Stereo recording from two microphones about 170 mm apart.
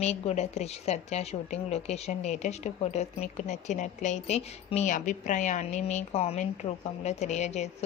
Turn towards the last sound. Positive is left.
turn(degrees=40)  # may be behind; listen again after turning